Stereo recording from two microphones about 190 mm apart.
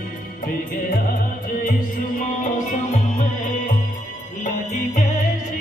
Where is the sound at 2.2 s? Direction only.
40° left (ahead or behind).